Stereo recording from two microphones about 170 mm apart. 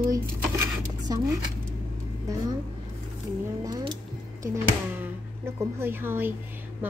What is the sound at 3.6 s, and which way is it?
Speech, 25° right (ahead or behind).